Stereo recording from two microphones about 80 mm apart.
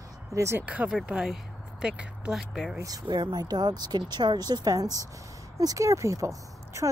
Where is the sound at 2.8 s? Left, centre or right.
Right.